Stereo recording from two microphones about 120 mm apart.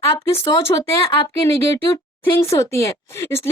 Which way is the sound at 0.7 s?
30° left (ahead or behind).